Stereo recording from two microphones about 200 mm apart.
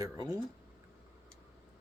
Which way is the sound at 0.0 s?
15° right (ahead or behind).